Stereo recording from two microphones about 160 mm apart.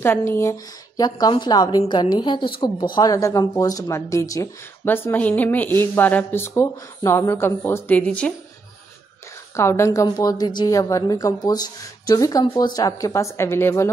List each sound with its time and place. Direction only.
0.0 s a woman's voice: 15° left (ahead or behind)
9.6 s a woman's voice: 15° left (ahead or behind)